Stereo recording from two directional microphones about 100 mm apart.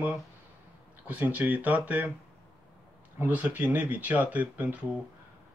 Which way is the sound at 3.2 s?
15° right (ahead or behind).